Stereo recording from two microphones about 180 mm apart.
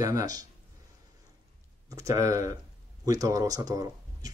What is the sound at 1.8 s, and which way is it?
Speech, 20° right (ahead or behind).